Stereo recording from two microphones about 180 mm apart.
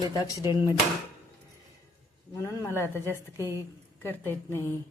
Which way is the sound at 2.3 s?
15° left (ahead or behind).